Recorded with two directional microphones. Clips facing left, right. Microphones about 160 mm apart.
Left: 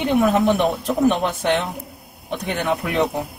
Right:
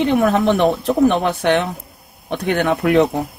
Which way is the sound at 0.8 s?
60° right (ahead or behind).